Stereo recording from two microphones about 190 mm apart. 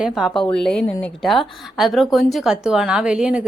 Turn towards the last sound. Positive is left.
turn(degrees=-5)  # may be behind; listen again after turning